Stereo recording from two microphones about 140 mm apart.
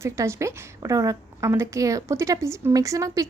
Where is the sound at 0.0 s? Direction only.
20° right (ahead or behind).